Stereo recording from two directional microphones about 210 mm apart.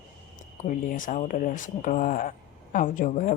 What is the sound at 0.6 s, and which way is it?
A woman's voice, 40° left (ahead or behind).